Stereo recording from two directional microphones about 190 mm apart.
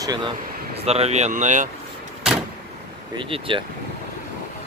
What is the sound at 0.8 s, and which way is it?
Speech, 35° right (ahead or behind).